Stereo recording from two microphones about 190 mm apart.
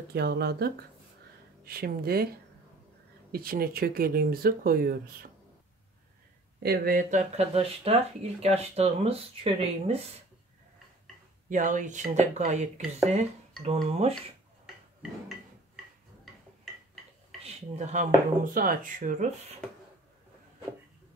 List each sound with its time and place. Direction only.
0.1 s speech: 55° right (ahead or behind)
3.3 s speech: 50° right (ahead or behind)
6.6 s speech: 55° right (ahead or behind); by 10.0 s 30° right (ahead or behind)
11.4 s speech: 40° right (ahead or behind)
15.0 s a sound: 5° right (ahead or behind)
17.4 s speech: 40° right (ahead or behind)